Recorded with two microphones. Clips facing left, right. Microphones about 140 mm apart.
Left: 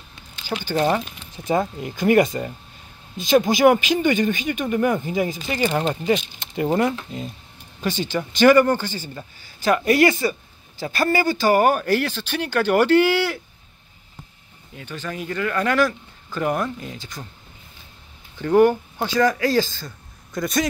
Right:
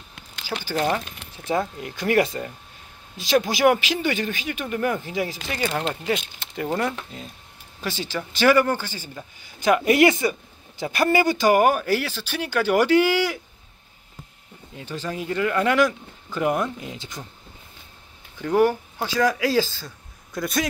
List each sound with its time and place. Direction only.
0.7 s speech: 10° left (ahead or behind); by 13.4 s 10° right (ahead or behind)
14.8 s speech: 30° right (ahead or behind)
18.4 s speech: 5° right (ahead or behind)